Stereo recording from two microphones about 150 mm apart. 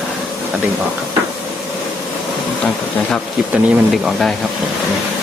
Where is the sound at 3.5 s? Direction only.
Centre (ahead or behind).